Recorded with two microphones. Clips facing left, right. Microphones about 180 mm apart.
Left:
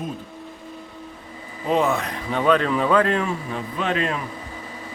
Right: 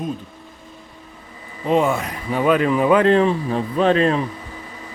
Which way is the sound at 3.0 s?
30° right (ahead or behind).